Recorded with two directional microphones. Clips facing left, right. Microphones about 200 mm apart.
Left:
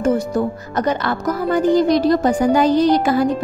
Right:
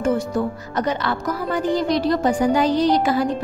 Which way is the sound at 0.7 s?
45° left (ahead or behind).